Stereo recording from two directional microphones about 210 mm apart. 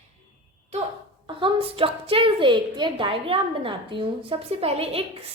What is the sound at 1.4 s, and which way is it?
A woman's voice, 25° right (ahead or behind).